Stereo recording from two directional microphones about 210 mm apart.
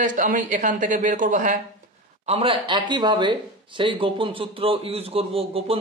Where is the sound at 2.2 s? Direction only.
25° right (ahead or behind).